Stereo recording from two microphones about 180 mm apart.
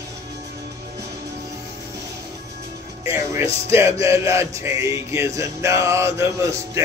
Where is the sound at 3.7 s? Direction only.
15° right (ahead or behind).